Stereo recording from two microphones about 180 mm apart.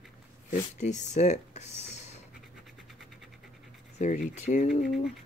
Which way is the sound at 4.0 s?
40° left (ahead or behind).